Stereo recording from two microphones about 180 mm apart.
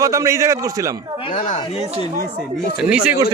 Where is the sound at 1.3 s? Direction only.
45° left (ahead or behind).